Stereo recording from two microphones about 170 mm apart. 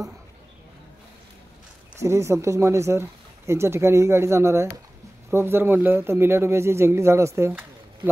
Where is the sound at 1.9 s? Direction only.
15° right (ahead or behind).